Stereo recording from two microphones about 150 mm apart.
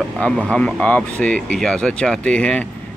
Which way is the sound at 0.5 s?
5° left (ahead or behind).